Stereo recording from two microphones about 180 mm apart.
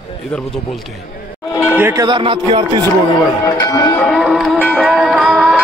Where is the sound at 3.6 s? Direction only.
20° left (ahead or behind).